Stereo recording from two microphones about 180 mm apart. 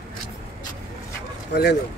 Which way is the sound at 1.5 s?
70° left (ahead or behind).